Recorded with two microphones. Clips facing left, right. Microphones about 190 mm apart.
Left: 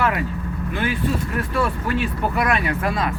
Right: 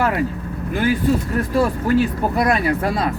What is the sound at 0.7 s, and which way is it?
Speech, 40° right (ahead or behind).